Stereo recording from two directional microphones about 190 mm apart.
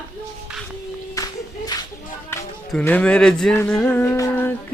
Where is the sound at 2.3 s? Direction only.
15° left (ahead or behind).